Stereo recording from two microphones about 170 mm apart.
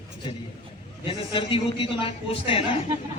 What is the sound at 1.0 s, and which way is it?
A man's voice, 30° left (ahead or behind).